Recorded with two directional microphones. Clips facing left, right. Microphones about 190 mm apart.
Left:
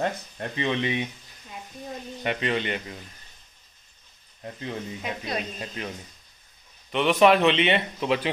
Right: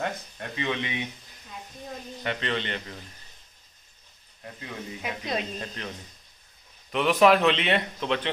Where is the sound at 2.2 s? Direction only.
15° left (ahead or behind).